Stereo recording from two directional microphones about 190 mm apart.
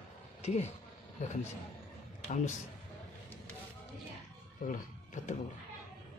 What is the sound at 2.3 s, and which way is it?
Speech, 40° left (ahead or behind).